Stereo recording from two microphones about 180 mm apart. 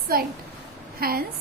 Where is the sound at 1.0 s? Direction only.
55° right (ahead or behind).